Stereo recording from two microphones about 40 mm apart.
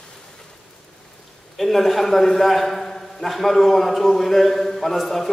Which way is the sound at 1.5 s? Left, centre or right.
Centre.